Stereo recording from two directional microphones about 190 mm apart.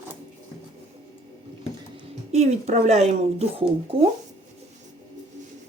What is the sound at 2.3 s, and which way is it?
Speech, 35° right (ahead or behind).